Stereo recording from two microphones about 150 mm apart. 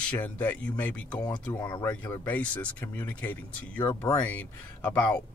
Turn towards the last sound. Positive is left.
turn(degrees=10)  # may be behind; listen again after turning